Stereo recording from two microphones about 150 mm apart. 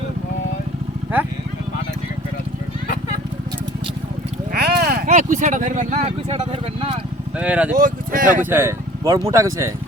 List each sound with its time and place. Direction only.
2.8 s a sound: 60° left (ahead or behind)
4.5 s speech: 90° right; by 6.9 s 40° right (ahead or behind)
7.3 s speech: 10° right (ahead or behind)
7.8 s speech: 70° right (ahead or behind)
8.4 s speech: 15° right (ahead or behind)